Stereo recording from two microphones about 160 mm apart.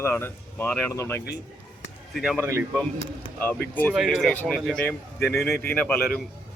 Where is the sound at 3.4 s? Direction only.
10° left (ahead or behind).